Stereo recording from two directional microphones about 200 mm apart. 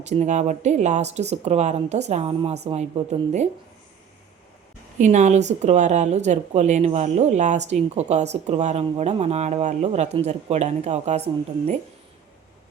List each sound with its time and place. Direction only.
0.0 s a woman's voice: 35° right (ahead or behind)
4.9 s a woman's voice: 35° right (ahead or behind)